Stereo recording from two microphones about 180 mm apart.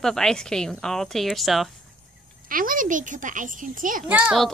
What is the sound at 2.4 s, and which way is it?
Speech, 50° right (ahead or behind).